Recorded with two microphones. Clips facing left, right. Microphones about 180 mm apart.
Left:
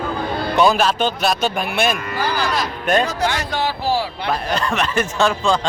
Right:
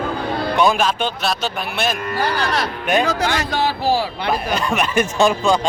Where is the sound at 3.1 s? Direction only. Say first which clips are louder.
Right 2 dB; 90° right.